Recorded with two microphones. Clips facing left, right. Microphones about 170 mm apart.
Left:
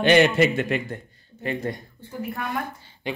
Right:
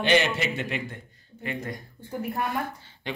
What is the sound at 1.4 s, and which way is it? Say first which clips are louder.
Speech: left 5 dB; 35° left (ahead or behind).